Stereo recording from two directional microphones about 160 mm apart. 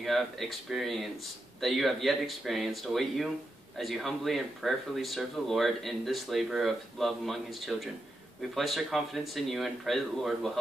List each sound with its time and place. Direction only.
0.0 s speech: centre (ahead or behind)